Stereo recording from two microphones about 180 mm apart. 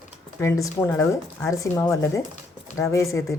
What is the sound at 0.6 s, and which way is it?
Speech, 15° left (ahead or behind).